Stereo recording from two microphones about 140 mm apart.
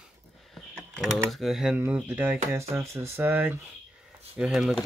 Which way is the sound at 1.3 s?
Centre (ahead or behind).